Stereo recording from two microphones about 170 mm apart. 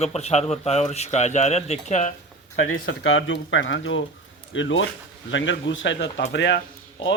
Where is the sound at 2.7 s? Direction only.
90° left.